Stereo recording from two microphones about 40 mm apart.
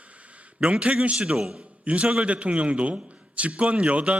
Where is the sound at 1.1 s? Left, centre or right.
Centre.